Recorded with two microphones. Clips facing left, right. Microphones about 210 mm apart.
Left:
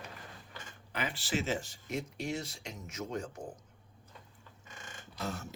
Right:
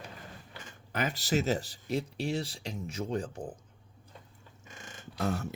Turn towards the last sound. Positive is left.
turn(degrees=-60)  # may be behind; listen again after turning